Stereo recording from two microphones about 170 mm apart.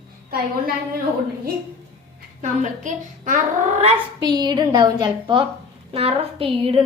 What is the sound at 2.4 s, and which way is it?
Speech, 45° right (ahead or behind).